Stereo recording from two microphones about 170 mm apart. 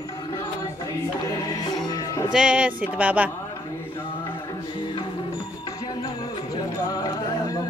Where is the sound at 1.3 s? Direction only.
20° left (ahead or behind).